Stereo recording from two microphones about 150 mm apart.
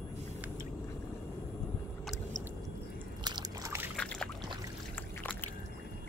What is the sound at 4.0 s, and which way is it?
Boat, 5° left (ahead or behind).